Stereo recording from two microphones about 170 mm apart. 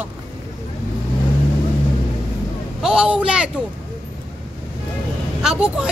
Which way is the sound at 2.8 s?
5° right (ahead or behind).